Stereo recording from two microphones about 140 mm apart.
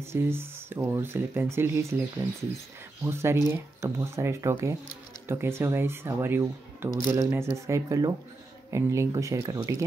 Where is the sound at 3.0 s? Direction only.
20° right (ahead or behind).